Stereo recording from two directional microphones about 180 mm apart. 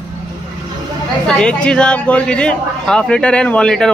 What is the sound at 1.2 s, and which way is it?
Speech, 5° left (ahead or behind).